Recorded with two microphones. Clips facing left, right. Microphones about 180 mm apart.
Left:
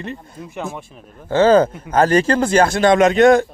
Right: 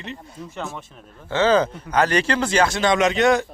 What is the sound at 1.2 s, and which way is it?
Speech, 50° left (ahead or behind).